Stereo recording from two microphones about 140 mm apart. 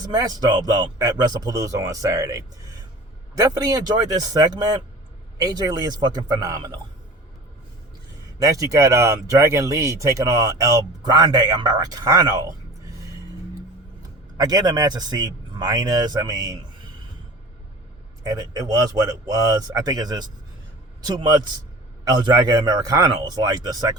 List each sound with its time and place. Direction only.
0.0 s speech: 25° right (ahead or behind)
8.4 s speech: 25° right (ahead or behind)
14.3 s speech: 30° right (ahead or behind)
18.2 s speech: 25° right (ahead or behind)